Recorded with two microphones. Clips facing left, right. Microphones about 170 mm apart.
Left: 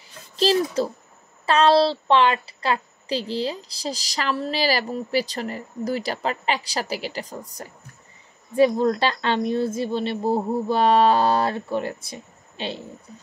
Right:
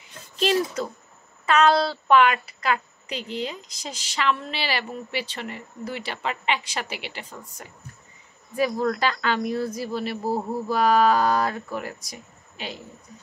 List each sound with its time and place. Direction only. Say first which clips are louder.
0.0 s a sound: left 3 dB; 35° left (ahead or behind)
1.4 s a woman's voice: left 3 dB; 30° left (ahead or behind)
8.5 s a woman's voice: left 5 dB; 30° left (ahead or behind)